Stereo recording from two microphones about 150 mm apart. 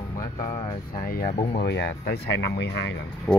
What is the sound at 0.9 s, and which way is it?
Speech, 80° left.